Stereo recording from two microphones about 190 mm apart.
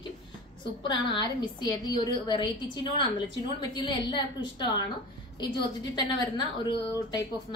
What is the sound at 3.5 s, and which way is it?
A woman's voice, 25° left (ahead or behind).